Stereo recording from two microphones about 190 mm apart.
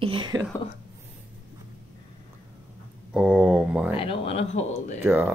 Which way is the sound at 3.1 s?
5° right (ahead or behind).